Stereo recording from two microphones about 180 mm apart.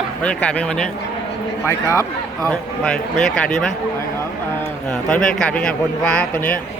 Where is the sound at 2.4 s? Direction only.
5° left (ahead or behind).